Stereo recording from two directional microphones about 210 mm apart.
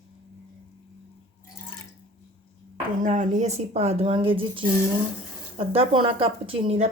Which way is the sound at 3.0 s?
35° right (ahead or behind).